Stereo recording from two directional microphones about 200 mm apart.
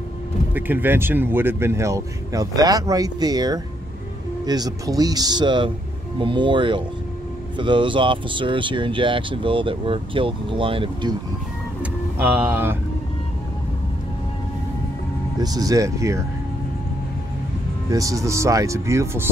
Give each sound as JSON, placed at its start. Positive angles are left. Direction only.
{"t": 0.6, "sound": "speech", "side_deg": -10}
{"t": 11.8, "sound": "vehicle", "side_deg": -10}
{"t": 15.3, "sound": "speech", "side_deg": -20}
{"t": 17.9, "sound": "speech", "side_deg": -15}